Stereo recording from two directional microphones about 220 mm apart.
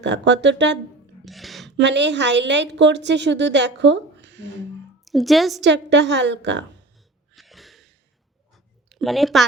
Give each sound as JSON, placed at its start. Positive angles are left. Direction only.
{"t": 0.0, "sound": "a woman's voice", "side_deg": -55}
{"t": 1.2, "sound": "a sound", "side_deg": 0}
{"t": 1.7, "sound": "a woman's voice", "side_deg": -55}
{"t": 5.0, "sound": "a woman's voice", "side_deg": 0}
{"t": 5.5, "sound": "a woman's voice", "side_deg": -50}
{"t": 7.3, "sound": "a sound", "side_deg": 0}
{"t": 8.9, "sound": "a woman's voice", "side_deg": 0}